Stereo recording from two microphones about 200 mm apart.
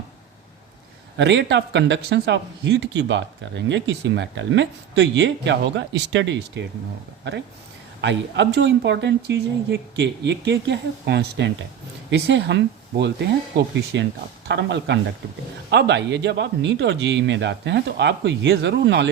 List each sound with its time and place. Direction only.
1.1 s speech: 65° right (ahead or behind)
8.0 s speech: 60° right (ahead or behind)